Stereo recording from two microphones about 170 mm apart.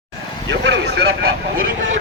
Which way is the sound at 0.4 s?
90° right.